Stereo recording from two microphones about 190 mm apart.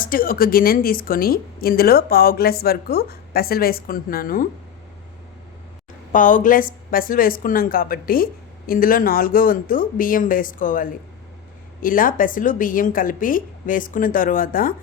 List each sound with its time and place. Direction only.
0.0 s a woman's voice: 50° left (ahead or behind)
6.1 s a woman's voice: 45° left (ahead or behind)